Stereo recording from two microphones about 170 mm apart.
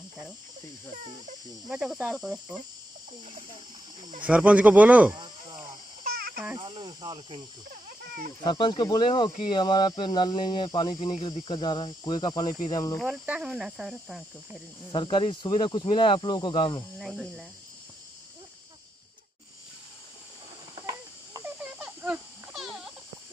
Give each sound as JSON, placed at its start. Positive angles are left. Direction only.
{"t": 1.7, "sound": "speech", "side_deg": -5}
{"t": 4.2, "sound": "speech", "side_deg": -5}
{"t": 5.1, "sound": "cricket", "side_deg": -25}
{"t": 6.5, "sound": "speech", "side_deg": -30}
{"t": 8.5, "sound": "speech", "side_deg": 25}
{"t": 12.5, "sound": "cricket", "side_deg": 45}
{"t": 13.0, "sound": "speech", "side_deg": -5}
{"t": 14.9, "sound": "speech", "side_deg": 30}
{"t": 17.0, "sound": "speech", "side_deg": 0}
{"t": 20.8, "sound": "a sound", "side_deg": -20}
{"t": 21.5, "sound": "a sound", "side_deg": -5}